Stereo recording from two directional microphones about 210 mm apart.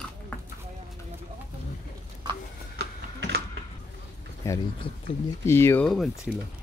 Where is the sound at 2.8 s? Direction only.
50° right (ahead or behind).